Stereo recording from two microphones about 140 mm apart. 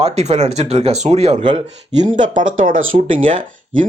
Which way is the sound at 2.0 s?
65° right (ahead or behind).